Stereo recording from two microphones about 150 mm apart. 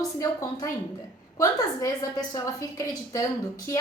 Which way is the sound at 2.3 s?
25° left (ahead or behind).